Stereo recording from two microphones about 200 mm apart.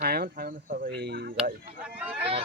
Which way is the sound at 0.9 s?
55° right (ahead or behind).